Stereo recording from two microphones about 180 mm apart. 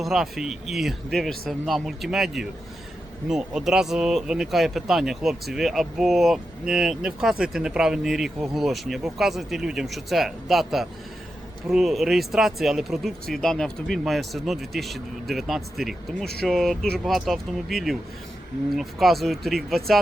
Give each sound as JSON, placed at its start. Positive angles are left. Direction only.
{"t": 0.0, "sound": "speech", "side_deg": 0}